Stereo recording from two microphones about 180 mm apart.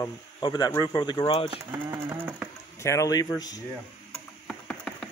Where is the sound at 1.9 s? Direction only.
10° right (ahead or behind).